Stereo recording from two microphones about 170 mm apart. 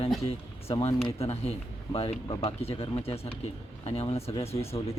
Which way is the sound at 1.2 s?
35° left (ahead or behind).